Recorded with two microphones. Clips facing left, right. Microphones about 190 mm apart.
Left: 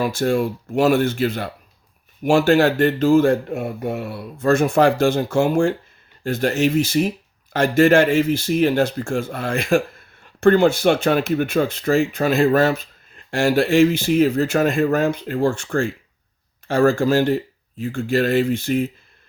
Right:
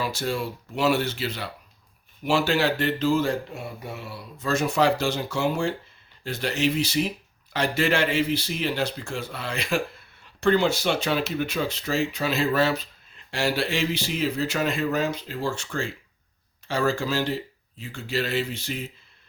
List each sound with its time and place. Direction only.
0.0 s speech: 50° left (ahead or behind)